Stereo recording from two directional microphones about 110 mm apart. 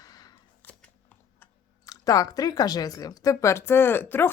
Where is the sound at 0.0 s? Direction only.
35° left (ahead or behind).